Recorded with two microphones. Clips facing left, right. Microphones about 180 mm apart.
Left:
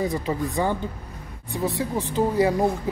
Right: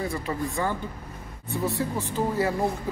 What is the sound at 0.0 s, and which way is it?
A man's voice, 20° left (ahead or behind).